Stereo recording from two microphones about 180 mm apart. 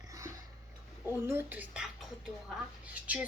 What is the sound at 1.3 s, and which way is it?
A woman's voice, 10° right (ahead or behind).